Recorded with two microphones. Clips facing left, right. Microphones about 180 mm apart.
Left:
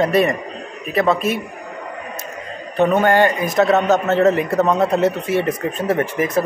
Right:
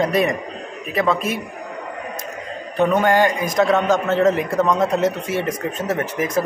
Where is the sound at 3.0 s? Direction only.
Centre (ahead or behind).